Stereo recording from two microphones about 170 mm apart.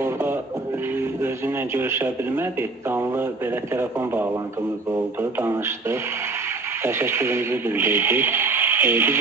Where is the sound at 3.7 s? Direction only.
10° right (ahead or behind).